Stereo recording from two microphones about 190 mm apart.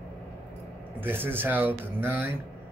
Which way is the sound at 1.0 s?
10° right (ahead or behind).